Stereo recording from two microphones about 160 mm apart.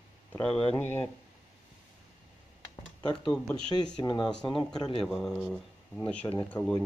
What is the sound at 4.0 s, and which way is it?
Speech, 30° left (ahead or behind).